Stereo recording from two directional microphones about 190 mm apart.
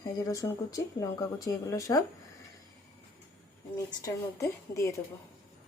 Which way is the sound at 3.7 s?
15° left (ahead or behind).